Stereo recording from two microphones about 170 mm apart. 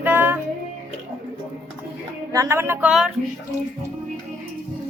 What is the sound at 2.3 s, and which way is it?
Speech, 15° right (ahead or behind).